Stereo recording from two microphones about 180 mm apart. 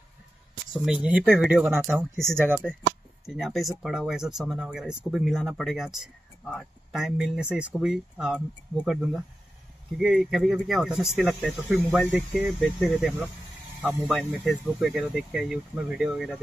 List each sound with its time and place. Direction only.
0.8 s speech: 5° right (ahead or behind)
3.3 s speech: centre (ahead or behind)
12.3 s speech: 10° right (ahead or behind)
12.5 s speech: centre (ahead or behind)